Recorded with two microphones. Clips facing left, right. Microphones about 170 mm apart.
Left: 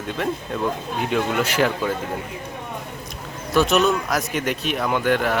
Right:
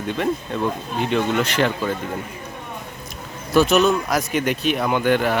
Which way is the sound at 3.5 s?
Centre (ahead or behind).